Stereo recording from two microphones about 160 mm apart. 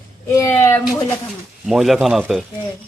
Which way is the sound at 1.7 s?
Centre (ahead or behind).